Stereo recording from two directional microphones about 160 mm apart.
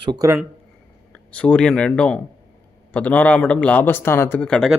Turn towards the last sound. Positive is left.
turn(degrees=5)  # may be behind; listen again after turning